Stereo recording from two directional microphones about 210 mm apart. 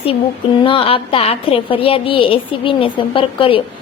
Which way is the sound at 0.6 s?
25° left (ahead or behind).